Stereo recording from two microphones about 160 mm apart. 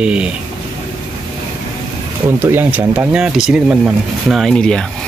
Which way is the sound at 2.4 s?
10° right (ahead or behind).